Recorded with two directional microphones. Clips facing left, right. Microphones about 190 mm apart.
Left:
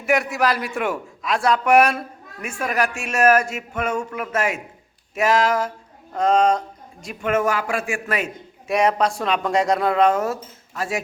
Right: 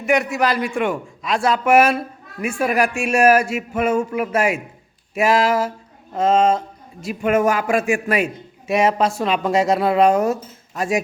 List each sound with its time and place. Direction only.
0.0 s a man's voice: centre (ahead or behind); by 11.0 s 15° right (ahead or behind)